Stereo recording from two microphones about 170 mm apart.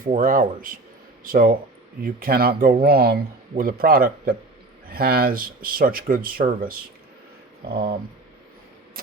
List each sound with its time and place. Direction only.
0.0 s speech: 50° right (ahead or behind)